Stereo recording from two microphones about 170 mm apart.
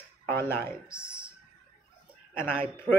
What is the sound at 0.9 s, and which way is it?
Speech, 5° right (ahead or behind).